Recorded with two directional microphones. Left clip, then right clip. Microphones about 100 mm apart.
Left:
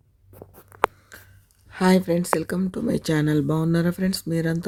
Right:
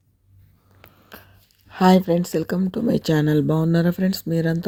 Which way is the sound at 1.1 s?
20° right (ahead or behind).